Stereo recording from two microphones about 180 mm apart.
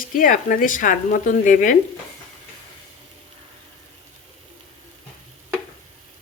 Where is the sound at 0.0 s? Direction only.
50° left (ahead or behind).